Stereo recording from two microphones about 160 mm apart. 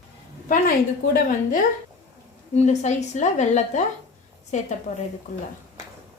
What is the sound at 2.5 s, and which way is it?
A woman's voice, 45° left (ahead or behind).